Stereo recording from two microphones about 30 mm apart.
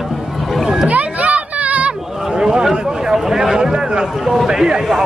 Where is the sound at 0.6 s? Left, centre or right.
Centre.